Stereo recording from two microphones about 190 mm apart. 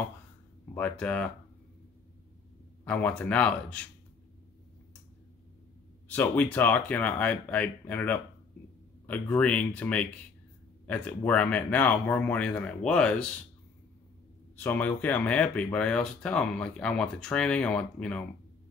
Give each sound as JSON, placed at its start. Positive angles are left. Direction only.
{"t": 0.7, "sound": "speech", "side_deg": 10}
{"t": 2.8, "sound": "speech", "side_deg": 5}
{"t": 6.1, "sound": "speech", "side_deg": 10}
{"t": 14.6, "sound": "speech", "side_deg": 10}